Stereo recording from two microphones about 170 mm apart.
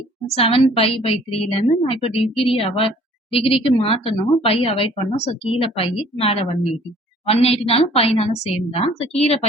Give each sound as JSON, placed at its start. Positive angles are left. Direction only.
{"t": 0.3, "sound": "a woman's voice", "side_deg": 35}